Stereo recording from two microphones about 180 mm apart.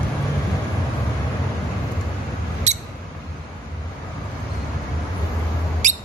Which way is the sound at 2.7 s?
40° right (ahead or behind).